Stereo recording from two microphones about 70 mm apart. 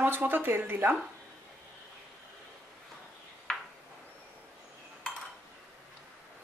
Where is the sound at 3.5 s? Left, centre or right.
Centre.